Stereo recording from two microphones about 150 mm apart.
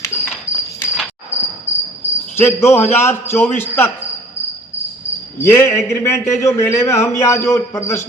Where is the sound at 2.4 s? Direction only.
15° left (ahead or behind).